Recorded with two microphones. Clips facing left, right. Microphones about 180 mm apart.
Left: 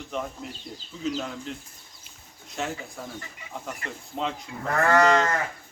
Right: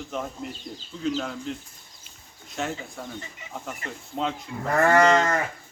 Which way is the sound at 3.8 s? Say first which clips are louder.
Right 1 dB; 25° right (ahead or behind).